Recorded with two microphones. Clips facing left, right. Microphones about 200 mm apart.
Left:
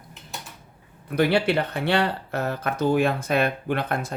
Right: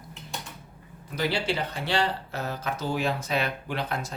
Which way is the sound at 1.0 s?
60° left (ahead or behind).